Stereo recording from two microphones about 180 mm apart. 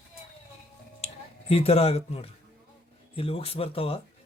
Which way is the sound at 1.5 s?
35° left (ahead or behind).